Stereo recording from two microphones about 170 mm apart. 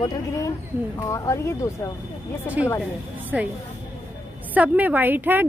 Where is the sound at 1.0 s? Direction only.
20° left (ahead or behind).